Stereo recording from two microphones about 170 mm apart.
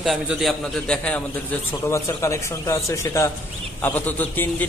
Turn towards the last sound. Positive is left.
turn(degrees=10)  # may be behind; listen again after turning